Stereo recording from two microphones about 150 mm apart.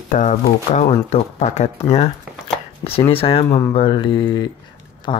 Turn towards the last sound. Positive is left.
turn(degrees=35)  # may be behind; listen again after turning